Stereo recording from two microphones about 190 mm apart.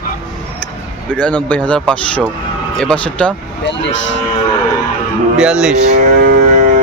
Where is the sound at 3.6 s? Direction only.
70° left (ahead or behind).